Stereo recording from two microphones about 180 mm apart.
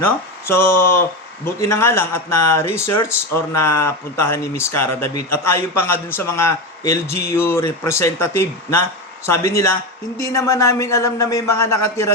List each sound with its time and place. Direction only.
0.4 s speech: 15° left (ahead or behind)